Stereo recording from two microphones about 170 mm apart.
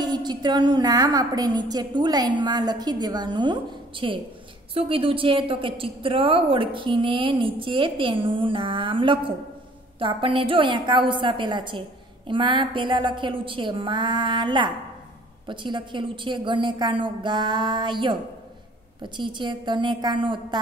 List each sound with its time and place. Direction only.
0.0 s a woman's voice: 25° right (ahead or behind)
19.1 s a woman's voice: 25° right (ahead or behind)